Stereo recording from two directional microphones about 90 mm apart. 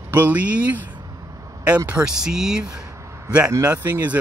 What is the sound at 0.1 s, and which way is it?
Speech, 20° right (ahead or behind).